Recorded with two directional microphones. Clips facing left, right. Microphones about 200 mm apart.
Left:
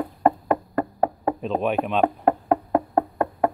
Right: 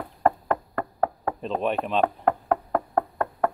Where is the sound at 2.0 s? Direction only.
20° left (ahead or behind).